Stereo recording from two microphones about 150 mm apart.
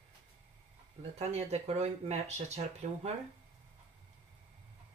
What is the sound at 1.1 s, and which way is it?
Speech, 45° right (ahead or behind).